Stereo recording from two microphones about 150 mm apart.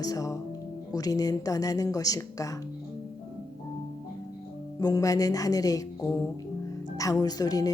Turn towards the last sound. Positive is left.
turn(degrees=25)  # may be behind; listen again after turning